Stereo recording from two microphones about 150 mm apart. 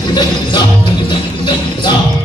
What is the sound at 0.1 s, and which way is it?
Music, 30° left (ahead or behind).